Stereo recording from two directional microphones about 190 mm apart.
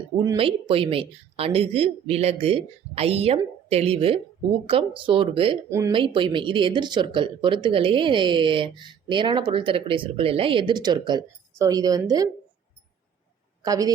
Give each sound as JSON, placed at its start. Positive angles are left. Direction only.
{"t": 0.3, "sound": "speech", "side_deg": -30}
{"t": 13.6, "sound": "a woman's voice", "side_deg": -20}